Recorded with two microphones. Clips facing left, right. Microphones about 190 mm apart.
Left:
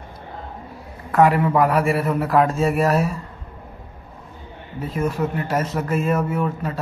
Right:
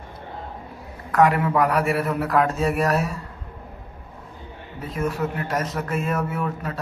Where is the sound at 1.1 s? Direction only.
Centre (ahead or behind).